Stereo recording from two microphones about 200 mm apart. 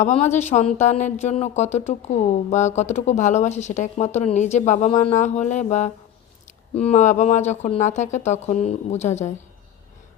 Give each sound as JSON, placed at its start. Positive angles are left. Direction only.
{"t": 0.0, "sound": "speech", "side_deg": 35}